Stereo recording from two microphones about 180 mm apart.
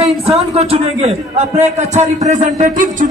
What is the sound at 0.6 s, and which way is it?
A man's voice, 35° right (ahead or behind).